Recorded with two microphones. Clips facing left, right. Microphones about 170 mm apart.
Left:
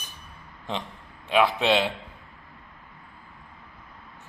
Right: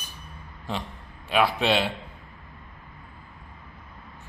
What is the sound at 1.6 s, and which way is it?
Speech, 15° left (ahead or behind).